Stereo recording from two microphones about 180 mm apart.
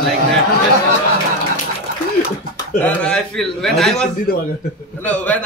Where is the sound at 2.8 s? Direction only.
5° left (ahead or behind).